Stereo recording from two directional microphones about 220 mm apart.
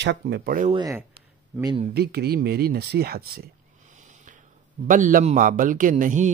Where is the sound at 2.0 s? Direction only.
45° right (ahead or behind).